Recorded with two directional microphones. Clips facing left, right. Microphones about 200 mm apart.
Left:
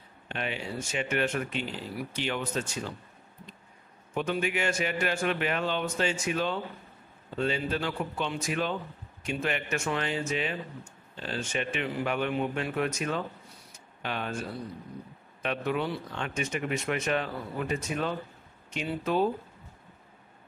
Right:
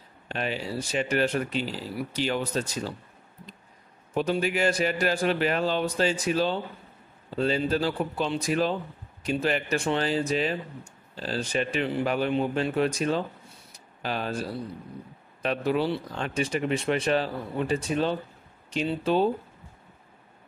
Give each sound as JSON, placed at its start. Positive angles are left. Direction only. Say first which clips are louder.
{"t": 0.3, "sound": "speech", "louder": "right 4 dB", "side_deg": -35}
{"t": 4.1, "sound": "speech", "louder": "right 4 dB", "side_deg": -35}
{"t": 13.7, "sound": "a sound", "louder": "right 4 dB", "side_deg": -35}
{"t": 15.4, "sound": "speech", "louder": "right 4 dB", "side_deg": -35}